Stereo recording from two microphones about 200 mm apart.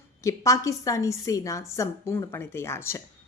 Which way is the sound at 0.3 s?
15° left (ahead or behind).